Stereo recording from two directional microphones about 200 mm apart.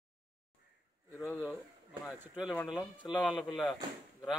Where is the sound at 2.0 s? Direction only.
5° right (ahead or behind).